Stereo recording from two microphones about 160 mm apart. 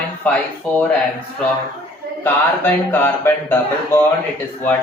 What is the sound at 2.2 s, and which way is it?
Music, 15° left (ahead or behind).